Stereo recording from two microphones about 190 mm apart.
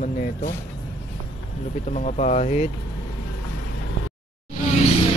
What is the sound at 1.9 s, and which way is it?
Speech, 40° left (ahead or behind).